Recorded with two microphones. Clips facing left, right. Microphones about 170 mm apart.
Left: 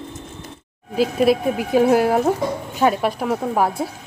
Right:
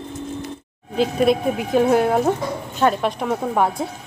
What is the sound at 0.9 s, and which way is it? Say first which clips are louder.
Speech: left 1 dB; 5° left (ahead or behind).